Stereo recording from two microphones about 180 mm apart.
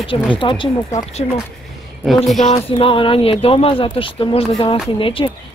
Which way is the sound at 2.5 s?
30° left (ahead or behind).